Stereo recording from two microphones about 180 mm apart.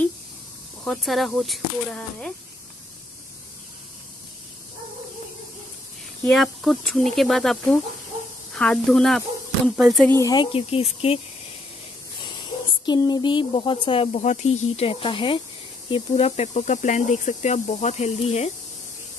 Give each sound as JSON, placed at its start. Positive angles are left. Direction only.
{"t": 0.8, "sound": "speech", "side_deg": 0}
{"t": 6.2, "sound": "speech", "side_deg": 0}
{"t": 8.5, "sound": "speech", "side_deg": 5}
{"t": 10.0, "sound": "speech", "side_deg": 15}
{"t": 12.8, "sound": "speech", "side_deg": 25}